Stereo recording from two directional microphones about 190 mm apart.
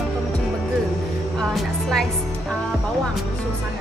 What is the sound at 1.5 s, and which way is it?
Speech, centre (ahead or behind).